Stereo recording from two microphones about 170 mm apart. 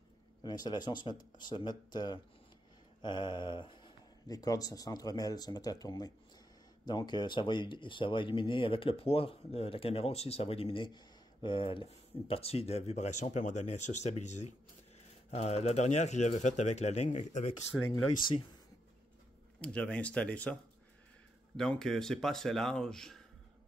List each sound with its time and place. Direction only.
0.4 s speech: 25° left (ahead or behind); by 17.6 s 40° left (ahead or behind)
19.6 s speech: 5° left (ahead or behind)
21.5 s speech: 5° left (ahead or behind)